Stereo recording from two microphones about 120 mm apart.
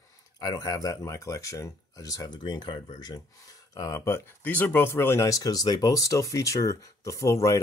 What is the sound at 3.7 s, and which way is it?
Speech, 30° left (ahead or behind).